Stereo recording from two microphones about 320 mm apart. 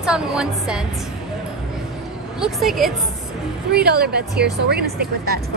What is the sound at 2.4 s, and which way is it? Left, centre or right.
Speech, centre.